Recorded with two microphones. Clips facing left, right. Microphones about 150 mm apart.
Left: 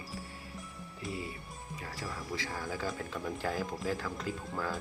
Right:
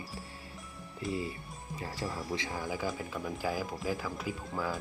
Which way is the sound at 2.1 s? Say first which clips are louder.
Right 2 dB; 20° right (ahead or behind).